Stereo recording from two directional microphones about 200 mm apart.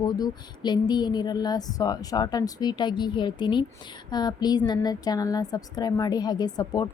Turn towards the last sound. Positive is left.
turn(degrees=20)  # may be behind; listen again after turning